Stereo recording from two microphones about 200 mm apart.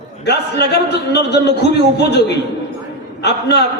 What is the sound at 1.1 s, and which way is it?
Speech, 55° left (ahead or behind).